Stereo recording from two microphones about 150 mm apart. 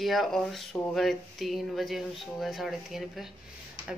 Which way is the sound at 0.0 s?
Centre (ahead or behind).